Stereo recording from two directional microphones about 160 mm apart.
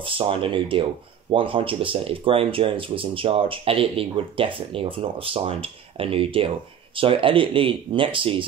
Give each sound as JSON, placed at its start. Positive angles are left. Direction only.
{"t": 0.0, "sound": "speech", "side_deg": -35}